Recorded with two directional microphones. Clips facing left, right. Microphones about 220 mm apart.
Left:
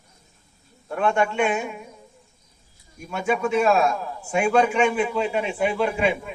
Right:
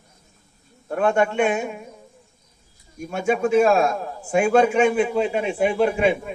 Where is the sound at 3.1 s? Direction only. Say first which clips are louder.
Right 3 dB; 40° right (ahead or behind).